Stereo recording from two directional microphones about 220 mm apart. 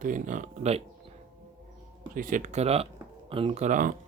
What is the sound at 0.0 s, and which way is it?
Speech, 35° right (ahead or behind).